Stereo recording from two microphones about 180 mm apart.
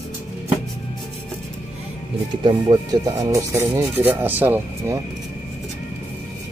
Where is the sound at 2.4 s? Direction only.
25° right (ahead or behind).